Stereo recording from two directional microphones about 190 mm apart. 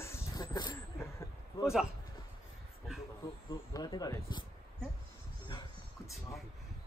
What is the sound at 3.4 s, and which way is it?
Speech, 20° left (ahead or behind).